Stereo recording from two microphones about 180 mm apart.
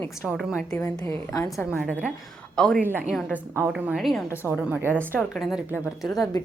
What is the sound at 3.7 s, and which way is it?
A woman's voice, centre (ahead or behind).